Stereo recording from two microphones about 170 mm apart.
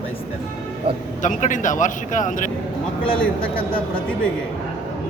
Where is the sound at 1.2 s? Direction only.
50° left (ahead or behind).